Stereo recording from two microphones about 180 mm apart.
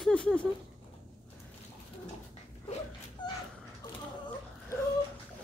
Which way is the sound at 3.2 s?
25° left (ahead or behind).